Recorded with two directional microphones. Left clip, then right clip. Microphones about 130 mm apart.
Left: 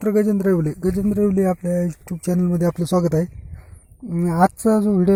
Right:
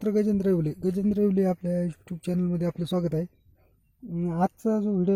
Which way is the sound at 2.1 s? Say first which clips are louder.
Left 8 dB; 5° right (ahead or behind).